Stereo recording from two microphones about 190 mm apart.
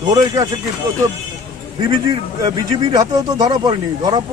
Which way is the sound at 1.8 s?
20° right (ahead or behind).